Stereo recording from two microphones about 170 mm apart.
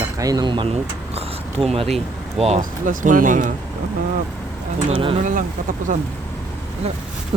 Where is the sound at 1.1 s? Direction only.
35° right (ahead or behind).